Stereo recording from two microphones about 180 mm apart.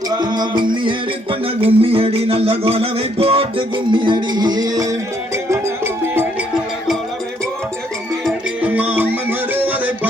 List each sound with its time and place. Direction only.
0.2 s music: 25° right (ahead or behind)
8.2 s music: 10° right (ahead or behind)